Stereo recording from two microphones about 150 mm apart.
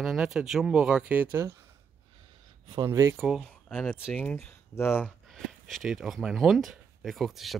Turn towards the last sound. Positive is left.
turn(degrees=0)  # may be behind; listen again after turning